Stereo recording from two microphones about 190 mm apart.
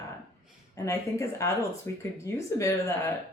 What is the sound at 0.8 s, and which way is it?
Speech, 15° left (ahead or behind).